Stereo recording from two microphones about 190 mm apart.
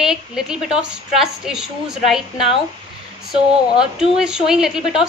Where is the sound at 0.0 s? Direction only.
5° right (ahead or behind).